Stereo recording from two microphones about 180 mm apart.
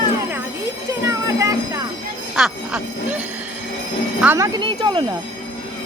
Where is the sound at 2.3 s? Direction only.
Centre (ahead or behind).